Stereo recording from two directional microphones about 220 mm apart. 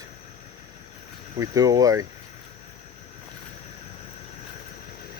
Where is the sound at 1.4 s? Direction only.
15° right (ahead or behind).